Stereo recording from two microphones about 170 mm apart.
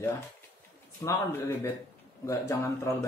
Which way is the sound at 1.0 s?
15° left (ahead or behind).